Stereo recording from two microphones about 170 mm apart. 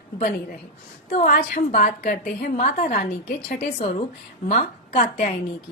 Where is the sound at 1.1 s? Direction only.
55° left (ahead or behind).